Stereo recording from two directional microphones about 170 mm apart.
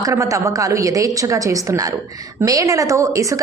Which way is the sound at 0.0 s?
20° right (ahead or behind).